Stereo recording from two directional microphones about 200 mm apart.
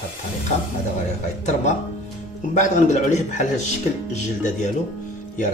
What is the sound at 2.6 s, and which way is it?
Speech, 35° left (ahead or behind).